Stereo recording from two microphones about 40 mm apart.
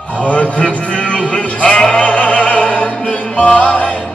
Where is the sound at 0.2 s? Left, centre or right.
Left.